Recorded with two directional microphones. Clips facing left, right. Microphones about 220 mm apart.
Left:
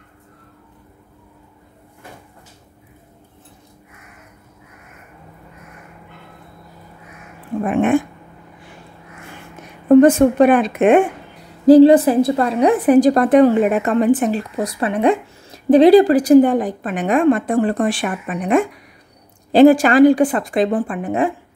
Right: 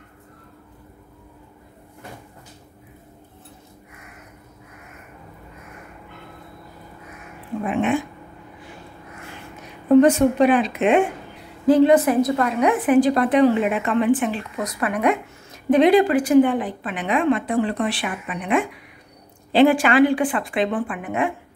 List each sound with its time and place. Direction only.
7.6 s speech: 50° left (ahead or behind)
9.8 s speech: 50° left (ahead or behind)
11.6 s a woman's voice: 35° left (ahead or behind)